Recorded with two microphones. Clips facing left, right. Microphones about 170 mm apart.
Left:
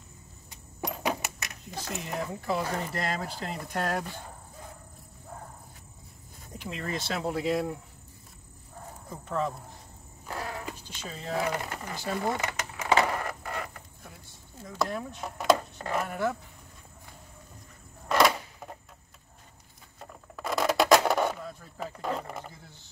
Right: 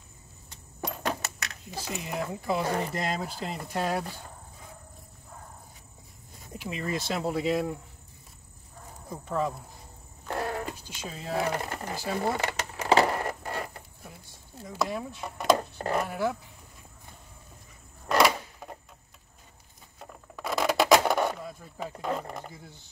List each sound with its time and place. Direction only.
0.8 s keys jangling: 5° left (ahead or behind)
1.7 s speech: 5° right (ahead or behind)
6.5 s speech: 5° right (ahead or behind)
9.1 s speech: 10° right (ahead or behind)
10.9 s speech: 5° right (ahead or behind)
11.4 s speech: 30° right (ahead or behind)
12.0 s speech: 5° right (ahead or behind)
12.4 s a sound: 35° right (ahead or behind)
14.6 s speech: 5° right (ahead or behind)
18.0 s a sound: centre (ahead or behind)
20.0 s a sound: centre (ahead or behind)